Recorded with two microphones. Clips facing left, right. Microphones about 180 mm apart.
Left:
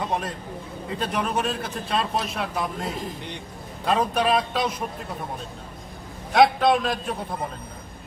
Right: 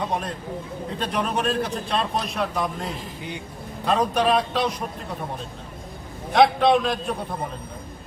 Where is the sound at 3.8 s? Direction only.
5° left (ahead or behind).